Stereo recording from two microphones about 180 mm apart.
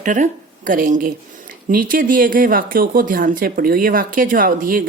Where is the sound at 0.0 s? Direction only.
45° right (ahead or behind).